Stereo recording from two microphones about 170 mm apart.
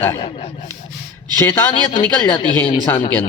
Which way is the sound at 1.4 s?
15° left (ahead or behind).